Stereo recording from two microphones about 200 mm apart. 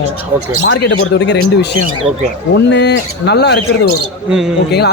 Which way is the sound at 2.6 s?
60° left (ahead or behind).